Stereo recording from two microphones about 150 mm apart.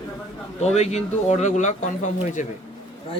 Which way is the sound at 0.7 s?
45° left (ahead or behind).